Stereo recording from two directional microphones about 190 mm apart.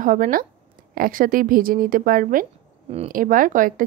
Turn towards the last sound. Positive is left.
turn(degrees=-45)  # may be behind; listen again after turning